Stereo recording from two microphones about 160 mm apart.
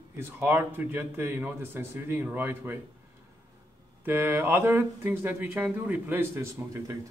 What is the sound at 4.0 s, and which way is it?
A man's voice, 15° right (ahead or behind).